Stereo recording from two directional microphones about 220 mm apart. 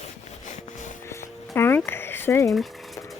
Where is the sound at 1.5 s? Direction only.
10° left (ahead or behind).